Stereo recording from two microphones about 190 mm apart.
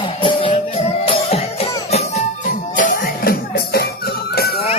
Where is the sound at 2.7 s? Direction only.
45° left (ahead or behind).